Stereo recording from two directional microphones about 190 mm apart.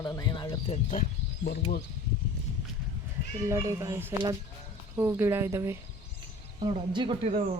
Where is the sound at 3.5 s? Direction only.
15° right (ahead or behind).